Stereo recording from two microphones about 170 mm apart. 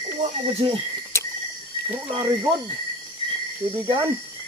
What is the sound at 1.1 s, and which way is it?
Cricket, 15° left (ahead or behind).